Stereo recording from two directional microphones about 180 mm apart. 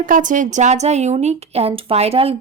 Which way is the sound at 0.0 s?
45° right (ahead or behind).